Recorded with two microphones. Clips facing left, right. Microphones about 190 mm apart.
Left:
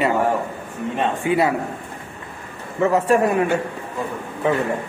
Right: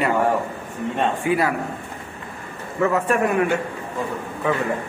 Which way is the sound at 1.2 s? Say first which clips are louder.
Left 3 dB; 25° left (ahead or behind).